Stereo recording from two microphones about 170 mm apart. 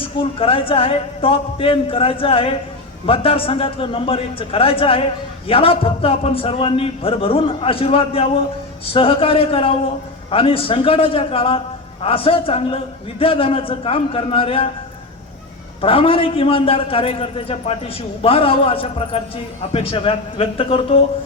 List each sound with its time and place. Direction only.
0.0 s a man's voice: 35° left (ahead or behind)
15.8 s a man's voice: 35° left (ahead or behind)